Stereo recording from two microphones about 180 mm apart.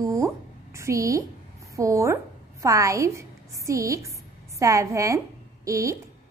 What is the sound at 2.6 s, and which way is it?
A woman's voice, 15° right (ahead or behind).